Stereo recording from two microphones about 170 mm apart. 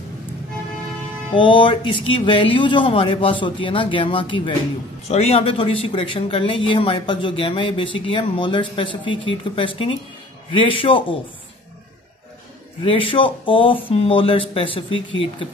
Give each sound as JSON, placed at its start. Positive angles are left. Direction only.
{"t": 1.3, "sound": "speech", "side_deg": 30}
{"t": 12.8, "sound": "speech", "side_deg": 30}